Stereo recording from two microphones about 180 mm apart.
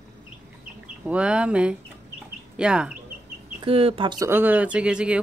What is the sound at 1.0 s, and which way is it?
Speech, 5° right (ahead or behind).